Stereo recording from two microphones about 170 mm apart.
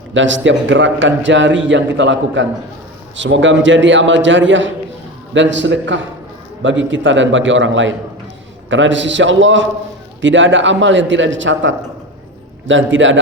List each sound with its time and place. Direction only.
0.1 s a man's voice: 90° right